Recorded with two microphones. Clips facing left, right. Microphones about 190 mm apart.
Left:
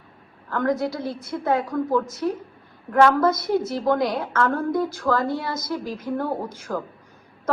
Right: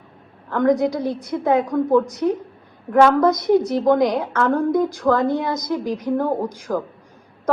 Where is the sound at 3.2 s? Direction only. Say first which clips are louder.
Right 5 dB; 15° right (ahead or behind).